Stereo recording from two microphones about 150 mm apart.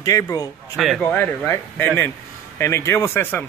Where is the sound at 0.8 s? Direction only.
5° left (ahead or behind).